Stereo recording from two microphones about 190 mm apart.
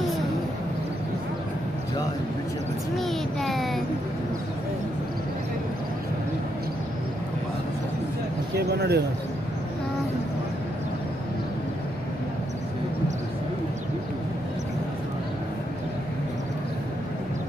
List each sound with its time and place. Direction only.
3.0 s child singing: centre (ahead or behind)
8.5 s speech: 60° right (ahead or behind)